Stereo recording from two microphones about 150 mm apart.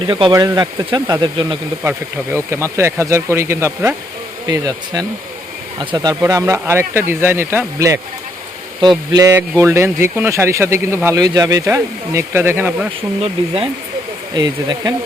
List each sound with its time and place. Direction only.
0.1 s speech: 30° right (ahead or behind)
1.8 s a man's voice: 15° right (ahead or behind)
6.1 s a man's voice: 20° right (ahead or behind)
13.2 s speech: 40° right (ahead or behind)
14.3 s speech: 25° right (ahead or behind)